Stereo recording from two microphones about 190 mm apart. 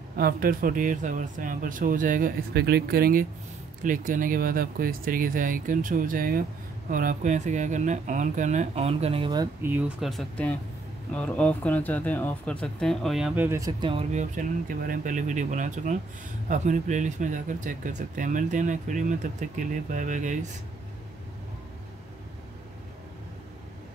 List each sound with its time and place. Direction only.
0.2 s speech: 50° right (ahead or behind)